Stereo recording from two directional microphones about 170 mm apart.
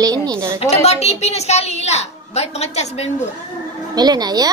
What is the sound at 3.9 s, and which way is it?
Stir, 25° right (ahead or behind).